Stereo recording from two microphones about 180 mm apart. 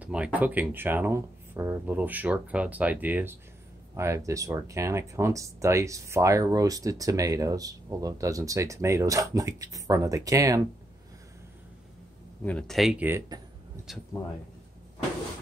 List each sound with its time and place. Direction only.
0.0 s speech: 5° right (ahead or behind)
12.4 s speech: 5° left (ahead or behind)